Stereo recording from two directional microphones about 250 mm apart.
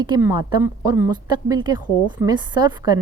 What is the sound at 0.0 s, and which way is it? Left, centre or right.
Speech, centre.